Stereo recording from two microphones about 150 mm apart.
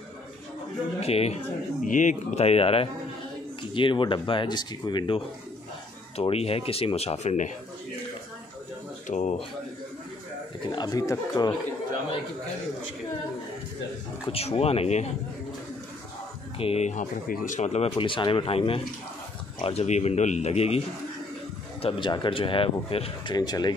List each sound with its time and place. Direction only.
1.0 s speech: 45° left (ahead or behind)
1.9 s speech: 55° left (ahead or behind)
9.0 s speech: 55° left (ahead or behind)
10.7 s speech: 25° left (ahead or behind)
14.3 s speech: 40° left (ahead or behind)
16.5 s speech: 40° left (ahead or behind)
17.9 s speech: 35° left (ahead or behind)
21.8 s speech: 35° left (ahead or behind)
23.3 s speech: 25° left (ahead or behind)